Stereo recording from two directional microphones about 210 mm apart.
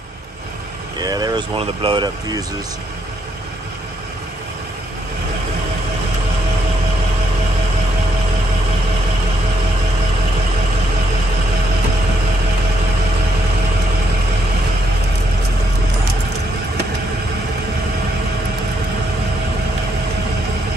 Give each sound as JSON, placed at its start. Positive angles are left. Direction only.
{"t": 1.0, "sound": "speech", "side_deg": -20}